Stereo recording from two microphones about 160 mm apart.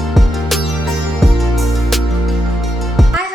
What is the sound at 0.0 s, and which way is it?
Music, centre (ahead or behind).